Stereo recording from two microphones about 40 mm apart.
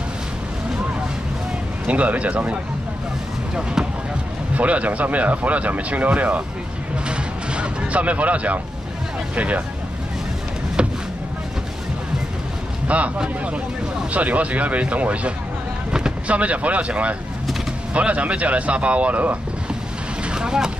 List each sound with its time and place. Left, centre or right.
1.9 s speech: right
4.6 s speech: right
7.1 s vehicle: right
9.3 s speech: right
10.8 s vehicle: right
12.8 s speech: right
14.1 s speech: right
20.2 s vehicle: centre